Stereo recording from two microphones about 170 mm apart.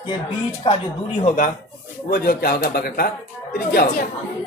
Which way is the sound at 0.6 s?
30° left (ahead or behind).